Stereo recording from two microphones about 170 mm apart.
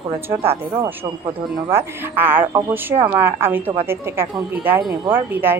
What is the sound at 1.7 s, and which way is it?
A woman's voice, 15° right (ahead or behind).